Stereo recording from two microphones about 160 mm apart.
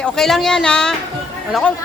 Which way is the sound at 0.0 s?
Centre (ahead or behind).